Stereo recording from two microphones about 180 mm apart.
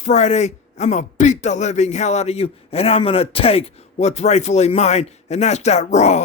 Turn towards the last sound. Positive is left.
turn(degrees=40)  # may be behind; listen again after turning